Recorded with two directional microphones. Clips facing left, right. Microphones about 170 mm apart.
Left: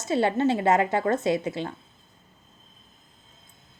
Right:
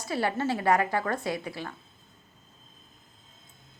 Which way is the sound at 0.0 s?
20° left (ahead or behind).